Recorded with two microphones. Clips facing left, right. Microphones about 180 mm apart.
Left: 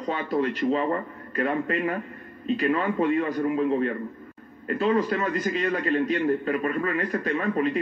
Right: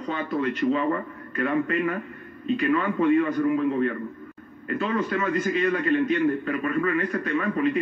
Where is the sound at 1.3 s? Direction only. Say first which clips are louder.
Right 1 dB; 35° left (ahead or behind).